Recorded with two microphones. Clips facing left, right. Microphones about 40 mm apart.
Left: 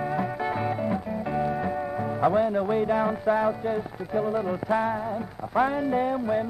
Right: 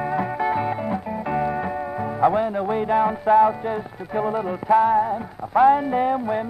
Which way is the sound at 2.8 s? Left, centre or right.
Right.